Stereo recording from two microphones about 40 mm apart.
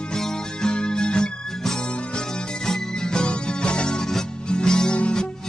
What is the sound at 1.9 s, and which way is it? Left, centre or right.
Music, left.